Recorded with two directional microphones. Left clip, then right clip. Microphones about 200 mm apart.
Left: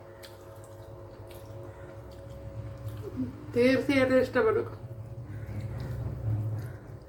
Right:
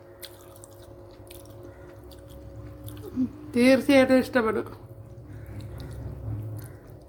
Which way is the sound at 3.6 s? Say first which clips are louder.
Right 5 dB; 55° right (ahead or behind).